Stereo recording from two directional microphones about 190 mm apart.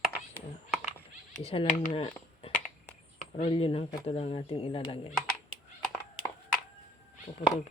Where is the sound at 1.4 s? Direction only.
30° left (ahead or behind).